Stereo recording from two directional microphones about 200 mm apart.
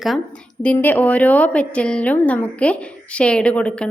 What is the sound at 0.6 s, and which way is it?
A woman's voice, 5° left (ahead or behind).